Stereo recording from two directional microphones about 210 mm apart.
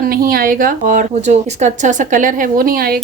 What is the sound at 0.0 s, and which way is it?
Speech, 45° right (ahead or behind).